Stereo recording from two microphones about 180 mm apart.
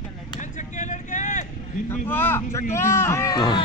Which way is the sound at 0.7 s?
40° left (ahead or behind).